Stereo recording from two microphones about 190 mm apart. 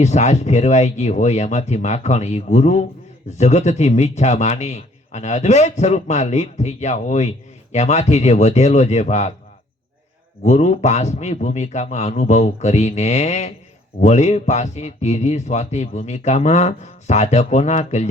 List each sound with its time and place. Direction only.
0.0 s speech: 35° left (ahead or behind)
10.4 s speech: 35° left (ahead or behind)